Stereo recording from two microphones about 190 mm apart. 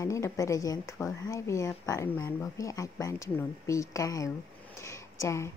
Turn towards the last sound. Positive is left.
turn(degrees=15)  # may be behind; listen again after turning